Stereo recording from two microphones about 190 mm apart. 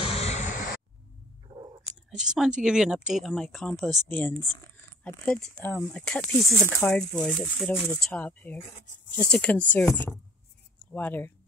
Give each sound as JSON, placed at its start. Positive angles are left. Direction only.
{"t": 0.0, "sound": "a sound", "side_deg": 30}
{"t": 1.5, "sound": "whispering", "side_deg": -20}
{"t": 2.0, "sound": "speech", "side_deg": -5}